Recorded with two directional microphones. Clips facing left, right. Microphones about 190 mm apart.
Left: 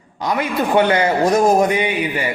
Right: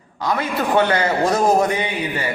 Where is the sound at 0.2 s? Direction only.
15° left (ahead or behind).